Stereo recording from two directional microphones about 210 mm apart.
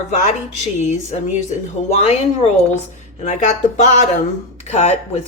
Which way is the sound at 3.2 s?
35° left (ahead or behind).